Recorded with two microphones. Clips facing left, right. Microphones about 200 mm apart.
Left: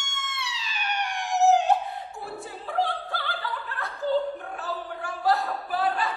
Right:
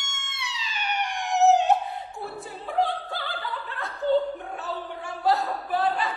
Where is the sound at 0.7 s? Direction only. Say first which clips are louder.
Right 1 dB; centre (ahead or behind).